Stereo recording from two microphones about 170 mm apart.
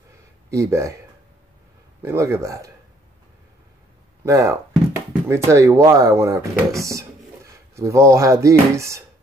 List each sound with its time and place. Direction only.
0.5 s speech: 15° right (ahead or behind)
2.0 s speech: 15° right (ahead or behind)
4.2 s speech: 15° right (ahead or behind)